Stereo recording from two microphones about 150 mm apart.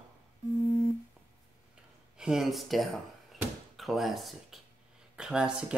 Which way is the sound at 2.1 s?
5° right (ahead or behind).